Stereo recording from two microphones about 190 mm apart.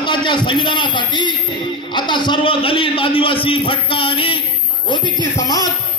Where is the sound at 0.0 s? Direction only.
25° left (ahead or behind).